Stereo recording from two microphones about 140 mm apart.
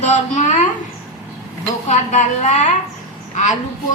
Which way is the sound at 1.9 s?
55° left (ahead or behind).